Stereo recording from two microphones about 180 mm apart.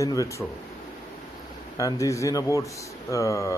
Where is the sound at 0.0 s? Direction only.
20° left (ahead or behind).